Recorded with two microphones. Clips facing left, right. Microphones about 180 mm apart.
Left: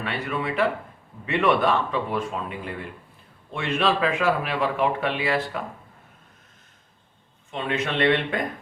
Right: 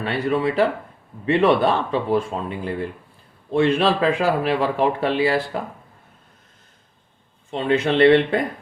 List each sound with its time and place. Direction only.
0.0 s speech: 35° right (ahead or behind)
7.5 s speech: 35° right (ahead or behind)